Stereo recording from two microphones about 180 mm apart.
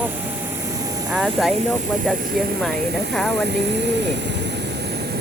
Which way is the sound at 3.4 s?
70° right (ahead or behind).